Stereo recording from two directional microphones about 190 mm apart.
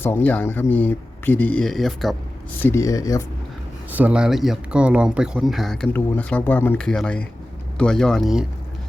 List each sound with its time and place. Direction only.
0.0 s speech: 10° left (ahead or behind)
2.6 s speech: 15° left (ahead or behind)
3.9 s speech: 5° right (ahead or behind)